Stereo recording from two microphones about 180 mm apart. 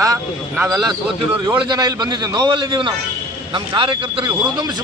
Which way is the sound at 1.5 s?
25° right (ahead or behind).